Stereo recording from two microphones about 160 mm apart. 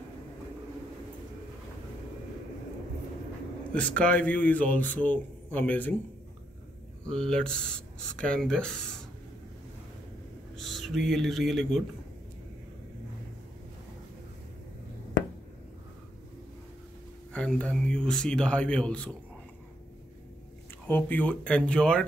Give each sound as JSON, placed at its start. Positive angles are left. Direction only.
{"t": 3.7, "sound": "a man's voice", "side_deg": 5}
{"t": 7.1, "sound": "speech", "side_deg": 5}
{"t": 10.5, "sound": "speech", "side_deg": 0}
{"t": 17.3, "sound": "a man's voice", "side_deg": 5}
{"t": 20.8, "sound": "a man's voice", "side_deg": 10}